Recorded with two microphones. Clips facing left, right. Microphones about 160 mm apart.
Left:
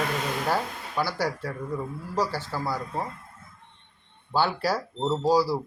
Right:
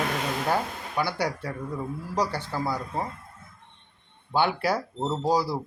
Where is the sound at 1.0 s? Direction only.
20° right (ahead or behind).